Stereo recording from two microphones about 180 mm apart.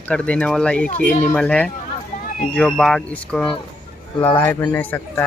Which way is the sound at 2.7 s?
5° left (ahead or behind).